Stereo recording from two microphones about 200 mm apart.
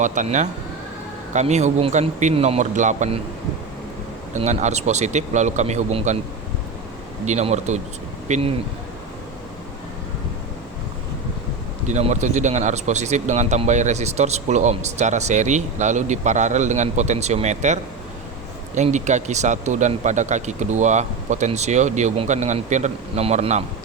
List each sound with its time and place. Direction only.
0.0 s speech: 40° right (ahead or behind)
4.4 s speech: 35° right (ahead or behind)
7.3 s speech: 35° right (ahead or behind)
11.9 s speech: 35° right (ahead or behind)